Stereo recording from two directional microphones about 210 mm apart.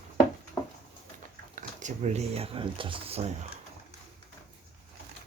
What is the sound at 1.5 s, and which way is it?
Speech, 35° right (ahead or behind).